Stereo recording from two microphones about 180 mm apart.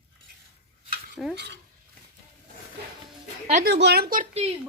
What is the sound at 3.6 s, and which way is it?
Speech, 65° right (ahead or behind).